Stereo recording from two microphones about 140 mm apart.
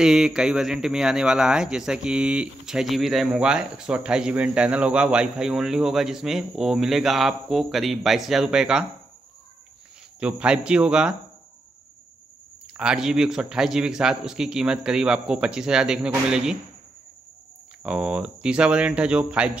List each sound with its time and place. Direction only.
0.0 s speech: 5° right (ahead or behind)
10.2 s speech: 5° right (ahead or behind)
12.7 s speech: 5° right (ahead or behind)
17.8 s speech: 5° right (ahead or behind)